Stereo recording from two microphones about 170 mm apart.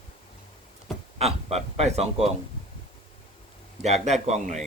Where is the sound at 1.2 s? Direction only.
35° right (ahead or behind).